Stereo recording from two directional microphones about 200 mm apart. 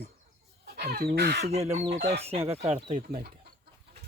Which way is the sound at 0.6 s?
50° right (ahead or behind).